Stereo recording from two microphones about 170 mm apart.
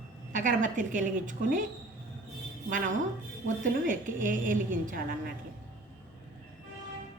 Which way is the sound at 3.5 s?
50° right (ahead or behind).